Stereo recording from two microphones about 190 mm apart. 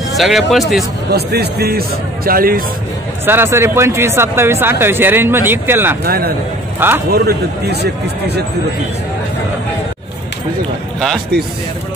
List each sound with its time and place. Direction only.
0.2 s speech: centre (ahead or behind)
1.1 s speech: 55° right (ahead or behind)
3.3 s speech: 10° right (ahead or behind)
6.0 s speech: 55° right (ahead or behind)